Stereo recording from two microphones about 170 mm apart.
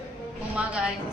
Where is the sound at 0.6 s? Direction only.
5° right (ahead or behind).